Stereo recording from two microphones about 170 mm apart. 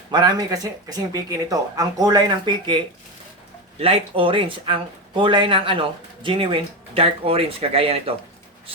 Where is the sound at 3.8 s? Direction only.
35° right (ahead or behind).